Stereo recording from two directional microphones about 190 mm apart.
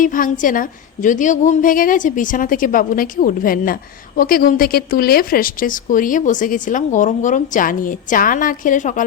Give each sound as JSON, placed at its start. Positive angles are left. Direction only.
{"t": 0.0, "sound": "a woman's voice", "side_deg": 45}